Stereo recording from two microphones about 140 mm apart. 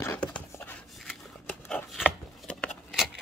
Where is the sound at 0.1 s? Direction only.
10° left (ahead or behind).